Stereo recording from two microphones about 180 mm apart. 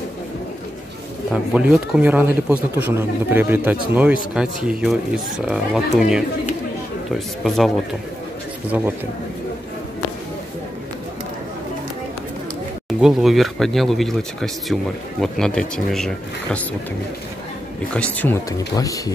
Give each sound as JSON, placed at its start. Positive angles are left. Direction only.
{"t": 1.3, "sound": "speech", "side_deg": -5}
{"t": 13.0, "sound": "speech", "side_deg": 0}
{"t": 17.9, "sound": "speech", "side_deg": 10}
{"t": 18.8, "sound": "speech", "side_deg": 20}